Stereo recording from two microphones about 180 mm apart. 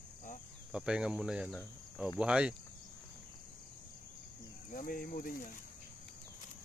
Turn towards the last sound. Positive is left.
turn(degrees=50)  # may be behind; listen again after turning